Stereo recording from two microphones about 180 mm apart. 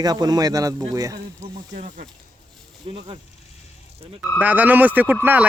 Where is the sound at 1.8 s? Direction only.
45° right (ahead or behind).